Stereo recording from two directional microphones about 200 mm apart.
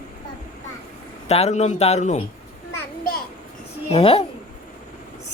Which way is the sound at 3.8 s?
30° left (ahead or behind).